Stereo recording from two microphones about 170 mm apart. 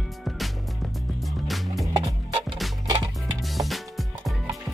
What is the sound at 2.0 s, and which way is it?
Music, 35° right (ahead or behind).